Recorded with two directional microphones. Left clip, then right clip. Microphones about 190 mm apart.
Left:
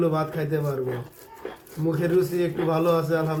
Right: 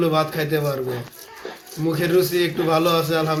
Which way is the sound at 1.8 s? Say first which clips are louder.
Right 4 dB; 25° right (ahead or behind).